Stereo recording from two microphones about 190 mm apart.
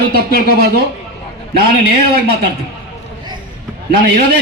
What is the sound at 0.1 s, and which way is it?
Speech, 55° right (ahead or behind).